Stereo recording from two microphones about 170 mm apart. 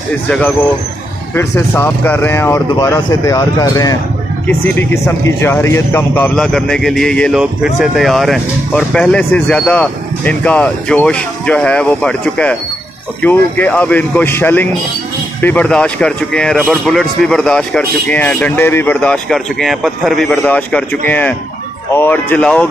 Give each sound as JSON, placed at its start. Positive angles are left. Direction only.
{"t": 1.3, "sound": "speech", "side_deg": 15}
{"t": 6.3, "sound": "speech", "side_deg": 5}